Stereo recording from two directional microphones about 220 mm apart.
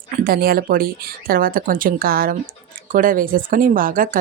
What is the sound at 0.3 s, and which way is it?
Speech, 40° right (ahead or behind).